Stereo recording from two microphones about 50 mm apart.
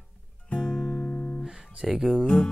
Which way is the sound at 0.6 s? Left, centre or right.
Centre.